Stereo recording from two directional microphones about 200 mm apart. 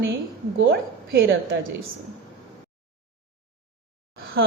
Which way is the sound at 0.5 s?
65° right (ahead or behind).